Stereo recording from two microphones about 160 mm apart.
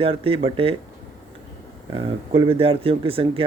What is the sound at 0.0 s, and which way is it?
Speech, 35° right (ahead or behind).